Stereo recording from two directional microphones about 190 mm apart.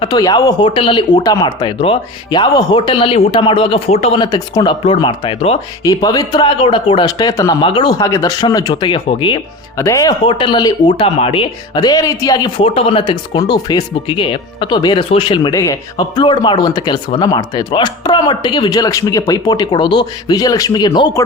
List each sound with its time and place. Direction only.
0.0 s speech: 20° left (ahead or behind)